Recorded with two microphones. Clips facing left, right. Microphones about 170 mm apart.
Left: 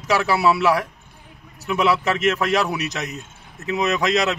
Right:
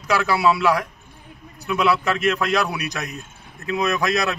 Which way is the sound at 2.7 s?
20° left (ahead or behind).